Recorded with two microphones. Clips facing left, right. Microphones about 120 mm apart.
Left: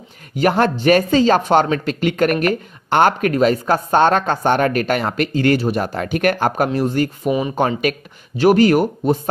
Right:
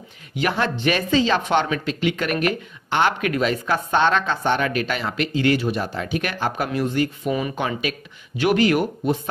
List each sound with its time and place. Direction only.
0.4 s speech: 45° left (ahead or behind)
6.7 s speech: 40° left (ahead or behind)
7.2 s speech: 20° left (ahead or behind)
7.5 s speech: 45° left (ahead or behind)